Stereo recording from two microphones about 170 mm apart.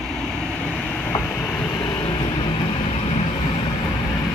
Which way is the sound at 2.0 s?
25° left (ahead or behind).